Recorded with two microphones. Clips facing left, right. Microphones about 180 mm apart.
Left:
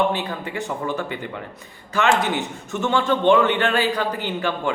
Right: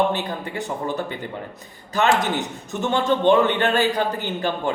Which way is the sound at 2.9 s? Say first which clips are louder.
Even; 40° right (ahead or behind).